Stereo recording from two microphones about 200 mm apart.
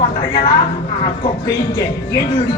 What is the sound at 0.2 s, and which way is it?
Speech, 25° left (ahead or behind).